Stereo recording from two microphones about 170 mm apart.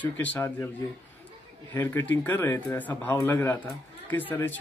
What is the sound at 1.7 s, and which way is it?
Speech, 10° left (ahead or behind).